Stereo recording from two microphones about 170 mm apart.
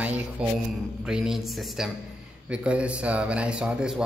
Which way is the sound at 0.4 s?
5° right (ahead or behind).